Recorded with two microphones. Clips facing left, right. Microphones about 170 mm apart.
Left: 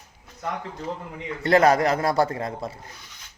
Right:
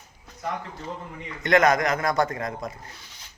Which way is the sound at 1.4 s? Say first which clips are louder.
Left 2 dB; 30° left (ahead or behind).